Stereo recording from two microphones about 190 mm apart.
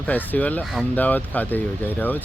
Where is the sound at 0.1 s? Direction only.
10° left (ahead or behind).